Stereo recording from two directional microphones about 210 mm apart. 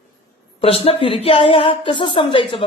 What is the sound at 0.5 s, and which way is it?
A woman's voice, 25° left (ahead or behind).